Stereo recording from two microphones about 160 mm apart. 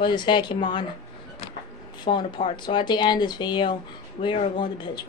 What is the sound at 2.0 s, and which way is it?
Speech, 30° left (ahead or behind).